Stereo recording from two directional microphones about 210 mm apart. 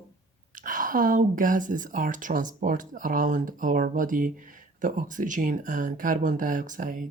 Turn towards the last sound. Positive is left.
turn(degrees=-40)  # may be behind; listen again after turning